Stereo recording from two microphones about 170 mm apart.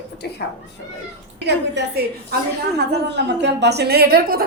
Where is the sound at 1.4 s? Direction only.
85° right; by 4.4 s 65° right (ahead or behind).